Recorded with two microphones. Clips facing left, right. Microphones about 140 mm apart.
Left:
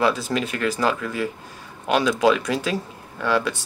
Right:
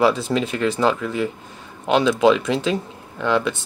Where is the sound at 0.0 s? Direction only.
25° right (ahead or behind).